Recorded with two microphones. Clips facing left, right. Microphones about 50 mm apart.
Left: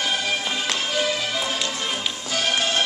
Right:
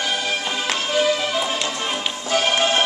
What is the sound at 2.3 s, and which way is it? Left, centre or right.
Music, right.